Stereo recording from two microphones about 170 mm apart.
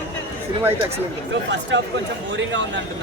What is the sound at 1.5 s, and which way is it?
Speech, 90° right.